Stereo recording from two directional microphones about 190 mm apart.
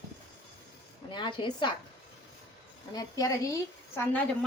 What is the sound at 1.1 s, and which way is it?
Speech, 25° left (ahead or behind).